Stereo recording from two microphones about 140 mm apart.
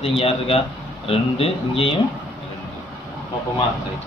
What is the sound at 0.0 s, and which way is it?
A man's voice, 45° left (ahead or behind).